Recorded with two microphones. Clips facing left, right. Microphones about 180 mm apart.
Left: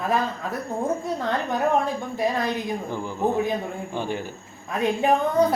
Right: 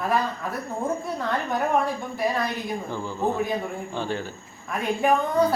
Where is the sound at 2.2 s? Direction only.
15° left (ahead or behind).